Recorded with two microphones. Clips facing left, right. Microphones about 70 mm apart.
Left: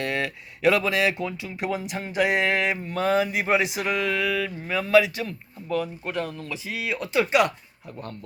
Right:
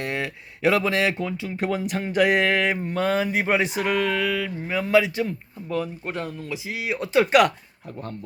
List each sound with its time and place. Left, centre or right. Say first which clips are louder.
0.0 s speech: left 1 dB; right
6.5 s speech: right 1 dB; right
7.3 s speech: right 3 dB; right